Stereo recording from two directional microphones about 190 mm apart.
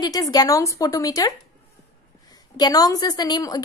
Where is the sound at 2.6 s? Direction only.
20° left (ahead or behind).